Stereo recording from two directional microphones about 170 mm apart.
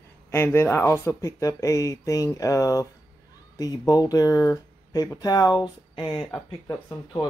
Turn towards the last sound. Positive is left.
turn(degrees=25)  # may be behind; listen again after turning